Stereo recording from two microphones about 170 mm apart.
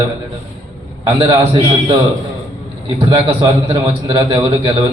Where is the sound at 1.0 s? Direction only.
35° right (ahead or behind).